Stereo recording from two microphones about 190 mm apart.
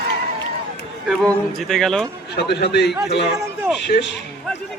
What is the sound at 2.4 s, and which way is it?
A man's voice, 60° left (ahead or behind).